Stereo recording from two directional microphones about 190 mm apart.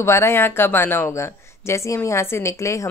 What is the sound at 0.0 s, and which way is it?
Speech, 15° left (ahead or behind).